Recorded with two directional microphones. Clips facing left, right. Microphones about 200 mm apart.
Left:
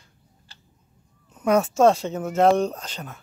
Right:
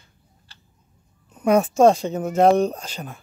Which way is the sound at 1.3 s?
10° right (ahead or behind).